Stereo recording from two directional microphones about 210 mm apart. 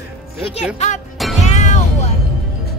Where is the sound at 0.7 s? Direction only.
35° left (ahead or behind).